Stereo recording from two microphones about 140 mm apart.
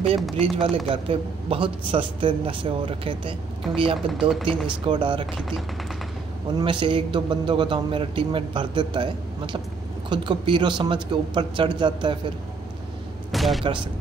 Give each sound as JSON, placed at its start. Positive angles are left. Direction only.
{"t": 0.4, "sound": "a man's voice", "side_deg": -40}
{"t": 4.1, "sound": "speech", "side_deg": -5}
{"t": 4.6, "sound": "a man's voice", "side_deg": -35}
{"t": 6.6, "sound": "a man's voice", "side_deg": -35}
{"t": 13.3, "sound": "speech", "side_deg": 0}